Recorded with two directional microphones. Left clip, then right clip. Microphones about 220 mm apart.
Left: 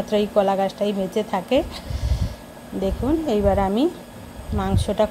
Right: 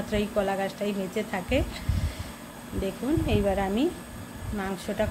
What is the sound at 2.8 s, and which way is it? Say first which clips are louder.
Speech: left 6 dB; 25° left (ahead or behind).